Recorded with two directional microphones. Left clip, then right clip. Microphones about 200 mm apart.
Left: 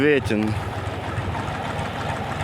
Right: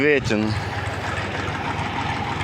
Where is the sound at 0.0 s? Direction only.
15° left (ahead or behind).